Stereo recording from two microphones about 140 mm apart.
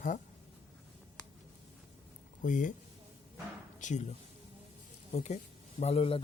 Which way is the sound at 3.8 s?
60° left (ahead or behind).